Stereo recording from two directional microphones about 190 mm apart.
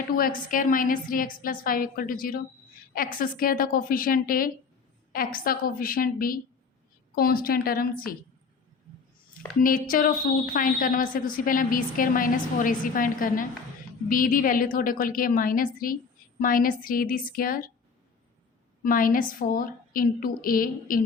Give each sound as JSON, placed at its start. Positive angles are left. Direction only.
{"t": 0.2, "sound": "a woman's voice", "side_deg": 45}
{"t": 9.6, "sound": "a woman's voice", "side_deg": 45}
{"t": 18.8, "sound": "a woman's voice", "side_deg": 45}